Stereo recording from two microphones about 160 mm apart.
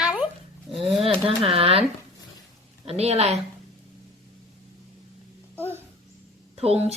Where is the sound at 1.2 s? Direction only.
35° right (ahead or behind).